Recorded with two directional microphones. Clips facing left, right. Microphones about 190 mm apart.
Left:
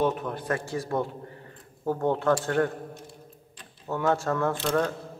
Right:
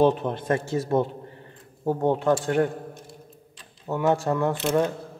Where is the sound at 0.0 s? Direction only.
30° right (ahead or behind).